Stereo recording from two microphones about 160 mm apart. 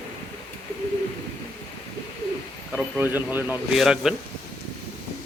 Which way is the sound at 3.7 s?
Centre (ahead or behind).